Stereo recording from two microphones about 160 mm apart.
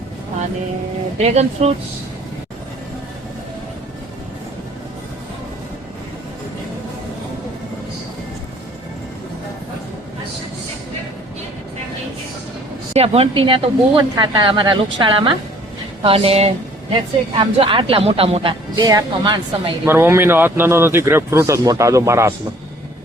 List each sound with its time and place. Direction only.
1.2 s speech: 45° right (ahead or behind)
12.9 s a woman's voice: 40° right (ahead or behind)
18.8 s speech: 25° right (ahead or behind)
19.8 s a man's voice: 15° right (ahead or behind)